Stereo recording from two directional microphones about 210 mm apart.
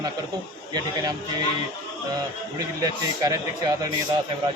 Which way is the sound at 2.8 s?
15° right (ahead or behind).